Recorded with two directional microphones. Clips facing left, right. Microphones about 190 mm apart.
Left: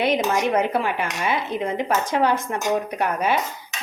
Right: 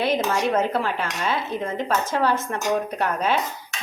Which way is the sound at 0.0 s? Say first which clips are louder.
Left 1 dB; 15° left (ahead or behind).